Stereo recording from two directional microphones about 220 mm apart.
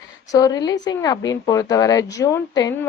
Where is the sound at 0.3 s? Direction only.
15° left (ahead or behind).